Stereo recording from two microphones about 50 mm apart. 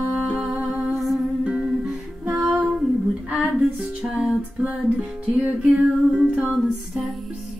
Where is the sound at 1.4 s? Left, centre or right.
Centre.